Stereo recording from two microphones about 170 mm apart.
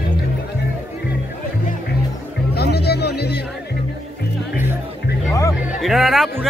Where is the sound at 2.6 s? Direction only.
75° left (ahead or behind).